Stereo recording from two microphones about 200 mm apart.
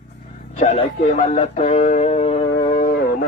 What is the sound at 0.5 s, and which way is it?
Speech, 35° left (ahead or behind).